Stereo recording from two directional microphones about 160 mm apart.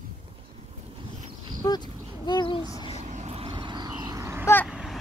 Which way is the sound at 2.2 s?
30° left (ahead or behind).